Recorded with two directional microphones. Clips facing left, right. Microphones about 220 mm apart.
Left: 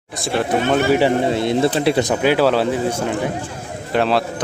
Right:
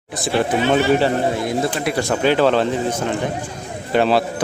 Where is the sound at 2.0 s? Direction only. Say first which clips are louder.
Even; 10° left (ahead or behind).